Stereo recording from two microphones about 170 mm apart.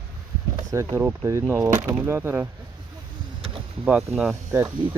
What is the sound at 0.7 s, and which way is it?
Speech, 15° right (ahead or behind).